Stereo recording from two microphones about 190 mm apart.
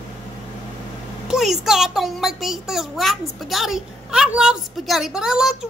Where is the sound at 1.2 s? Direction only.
Centre (ahead or behind).